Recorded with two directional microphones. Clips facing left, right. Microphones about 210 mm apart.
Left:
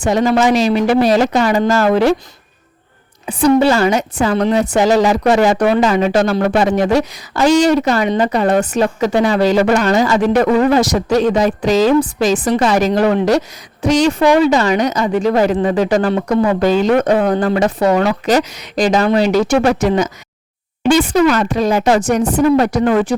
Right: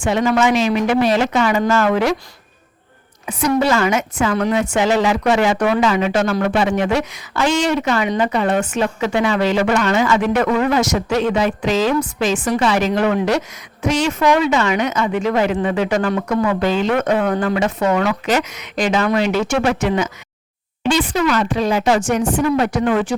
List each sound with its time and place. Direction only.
0.0 s a woman's voice: 35° left (ahead or behind)
3.2 s a woman's voice: 30° left (ahead or behind)